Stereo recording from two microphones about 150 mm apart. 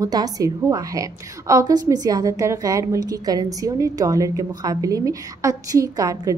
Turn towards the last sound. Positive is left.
turn(degrees=-25)  # may be behind; listen again after turning